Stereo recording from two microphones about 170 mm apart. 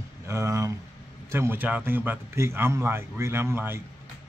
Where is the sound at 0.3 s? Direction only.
15° right (ahead or behind).